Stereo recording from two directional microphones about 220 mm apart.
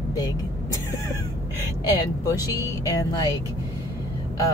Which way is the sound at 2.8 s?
15° left (ahead or behind).